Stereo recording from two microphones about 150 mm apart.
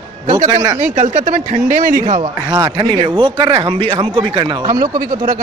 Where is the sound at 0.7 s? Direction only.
55° right (ahead or behind).